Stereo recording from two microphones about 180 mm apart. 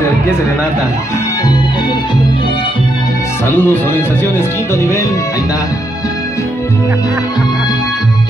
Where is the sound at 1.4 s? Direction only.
25° left (ahead or behind).